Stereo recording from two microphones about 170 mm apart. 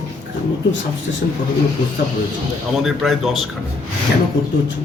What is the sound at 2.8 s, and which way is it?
Speech, centre (ahead or behind).